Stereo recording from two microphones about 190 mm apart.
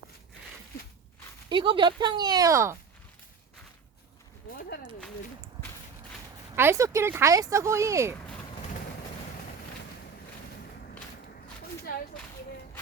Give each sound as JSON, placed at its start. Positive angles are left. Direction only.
{"t": 1.5, "sound": "speech", "side_deg": -25}
{"t": 6.6, "sound": "speech", "side_deg": -15}
{"t": 11.9, "sound": "a sound", "side_deg": 50}